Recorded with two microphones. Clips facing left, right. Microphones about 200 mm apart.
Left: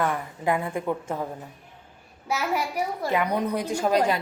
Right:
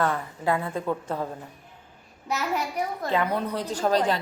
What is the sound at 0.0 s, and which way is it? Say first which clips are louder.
A child's voice: even; 15° left (ahead or behind).